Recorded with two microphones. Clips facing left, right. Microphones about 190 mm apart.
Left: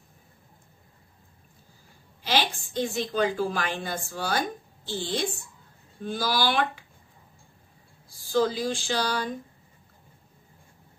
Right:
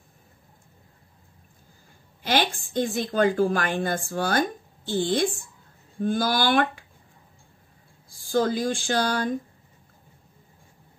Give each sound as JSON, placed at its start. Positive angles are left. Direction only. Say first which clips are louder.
{"t": 2.2, "sound": "a woman's voice", "louder": "right 3 dB", "side_deg": -50}
{"t": 8.2, "sound": "speech", "louder": "right 1 dB", "side_deg": -50}